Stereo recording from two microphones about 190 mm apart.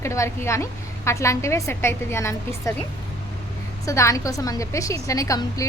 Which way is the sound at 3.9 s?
15° left (ahead or behind).